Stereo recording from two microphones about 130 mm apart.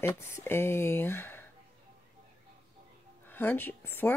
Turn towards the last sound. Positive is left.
turn(degrees=15)  # may be behind; listen again after turning